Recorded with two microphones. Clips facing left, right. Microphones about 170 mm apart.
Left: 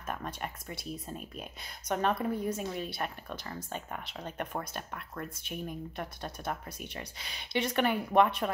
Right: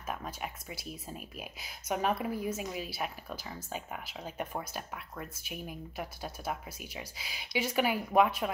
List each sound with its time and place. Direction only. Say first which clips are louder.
0.0 s speech: left 1 dB; 5° right (ahead or behind)